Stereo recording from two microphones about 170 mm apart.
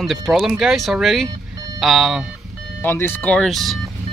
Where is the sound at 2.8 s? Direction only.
10° left (ahead or behind).